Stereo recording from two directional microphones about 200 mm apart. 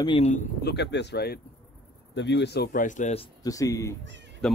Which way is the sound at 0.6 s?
55° left (ahead or behind).